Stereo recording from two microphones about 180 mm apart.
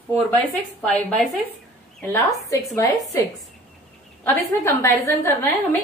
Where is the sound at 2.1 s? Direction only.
15° left (ahead or behind).